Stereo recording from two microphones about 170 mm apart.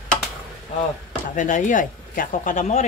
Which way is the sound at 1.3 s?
45° left (ahead or behind).